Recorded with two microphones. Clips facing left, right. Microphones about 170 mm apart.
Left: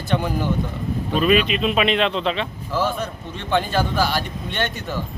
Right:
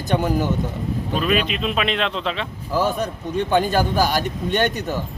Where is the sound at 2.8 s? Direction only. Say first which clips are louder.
Right 3 dB; 40° right (ahead or behind).